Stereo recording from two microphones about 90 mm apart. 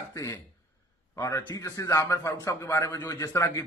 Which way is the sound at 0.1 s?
35° left (ahead or behind).